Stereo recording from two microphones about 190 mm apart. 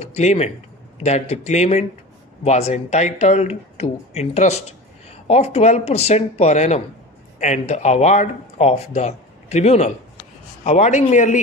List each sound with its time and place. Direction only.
0.0 s speech: 35° left (ahead or behind)